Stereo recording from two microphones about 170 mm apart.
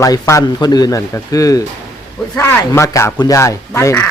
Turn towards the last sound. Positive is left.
turn(degrees=15)  # may be behind; listen again after turning